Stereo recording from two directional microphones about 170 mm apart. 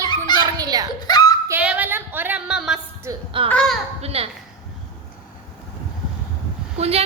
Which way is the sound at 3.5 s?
5° left (ahead or behind).